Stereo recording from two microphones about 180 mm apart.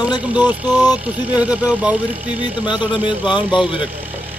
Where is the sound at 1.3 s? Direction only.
5° right (ahead or behind).